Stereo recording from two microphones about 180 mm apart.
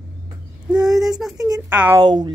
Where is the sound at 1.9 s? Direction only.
25° right (ahead or behind).